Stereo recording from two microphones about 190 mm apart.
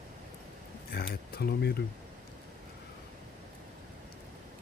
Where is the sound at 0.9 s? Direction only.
55° left (ahead or behind).